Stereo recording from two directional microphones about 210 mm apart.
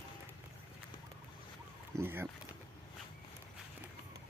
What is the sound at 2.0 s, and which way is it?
Speech, 10° right (ahead or behind).